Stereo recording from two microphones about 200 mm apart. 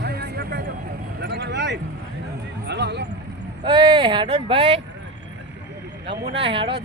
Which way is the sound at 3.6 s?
25° right (ahead or behind).